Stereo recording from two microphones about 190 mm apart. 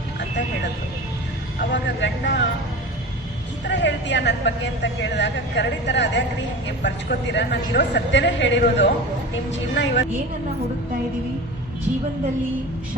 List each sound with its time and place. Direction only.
1.5 s speech: 70° left (ahead or behind)
3.6 s speech: 70° left (ahead or behind)